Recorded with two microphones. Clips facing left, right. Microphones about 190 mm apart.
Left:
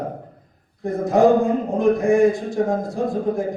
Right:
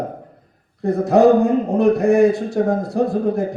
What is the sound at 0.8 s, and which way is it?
Speech, 70° right (ahead or behind).